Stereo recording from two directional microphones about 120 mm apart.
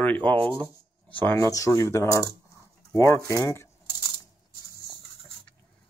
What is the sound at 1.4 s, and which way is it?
Speech, 25° left (ahead or behind).